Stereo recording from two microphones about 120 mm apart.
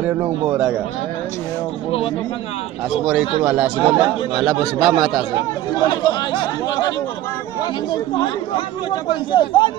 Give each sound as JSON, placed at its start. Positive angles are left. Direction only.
{"t": 3.4, "sound": "speech", "side_deg": -15}
{"t": 4.4, "sound": "a man's voice", "side_deg": 0}
{"t": 5.9, "sound": "speech", "side_deg": 40}
{"t": 8.5, "sound": "speech", "side_deg": 40}